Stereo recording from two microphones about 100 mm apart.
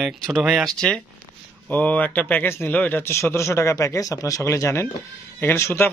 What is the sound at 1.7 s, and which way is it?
Speech, 15° left (ahead or behind).